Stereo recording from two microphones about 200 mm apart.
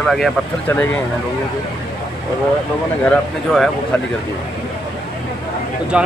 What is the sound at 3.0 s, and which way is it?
Speech, 5° left (ahead or behind).